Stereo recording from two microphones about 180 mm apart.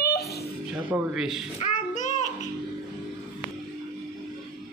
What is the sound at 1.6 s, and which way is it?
Child singing, 40° left (ahead or behind).